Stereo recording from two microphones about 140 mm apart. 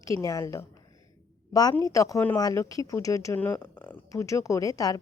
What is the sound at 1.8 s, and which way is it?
A man's voice, 25° left (ahead or behind).